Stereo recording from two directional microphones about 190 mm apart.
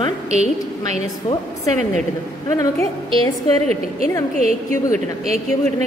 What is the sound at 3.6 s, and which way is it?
Speech, 35° right (ahead or behind).